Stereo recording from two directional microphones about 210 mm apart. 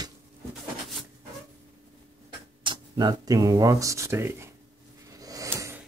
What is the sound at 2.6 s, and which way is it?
Speech, 20° right (ahead or behind).